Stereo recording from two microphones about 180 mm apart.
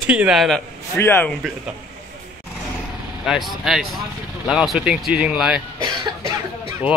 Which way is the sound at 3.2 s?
Centre (ahead or behind).